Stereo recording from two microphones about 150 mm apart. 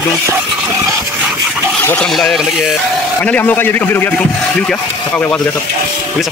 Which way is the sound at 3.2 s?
10° left (ahead or behind).